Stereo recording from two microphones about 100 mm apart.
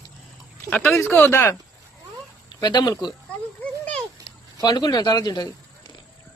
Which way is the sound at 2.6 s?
45° left (ahead or behind).